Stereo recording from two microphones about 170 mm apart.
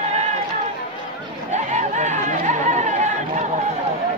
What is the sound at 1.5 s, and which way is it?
Chatter, 45° right (ahead or behind).